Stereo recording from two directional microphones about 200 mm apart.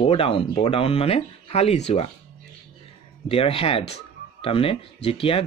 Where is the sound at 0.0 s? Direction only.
30° left (ahead or behind).